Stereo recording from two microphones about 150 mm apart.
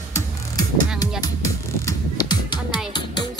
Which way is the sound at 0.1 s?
25° left (ahead or behind).